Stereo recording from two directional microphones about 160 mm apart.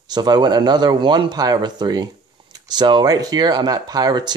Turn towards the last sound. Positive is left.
turn(degrees=-25)  # may be behind; listen again after turning